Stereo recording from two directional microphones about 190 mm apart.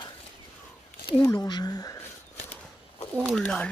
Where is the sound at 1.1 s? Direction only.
15° left (ahead or behind).